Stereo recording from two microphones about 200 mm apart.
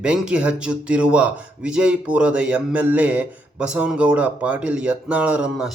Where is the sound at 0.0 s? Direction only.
5° right (ahead or behind).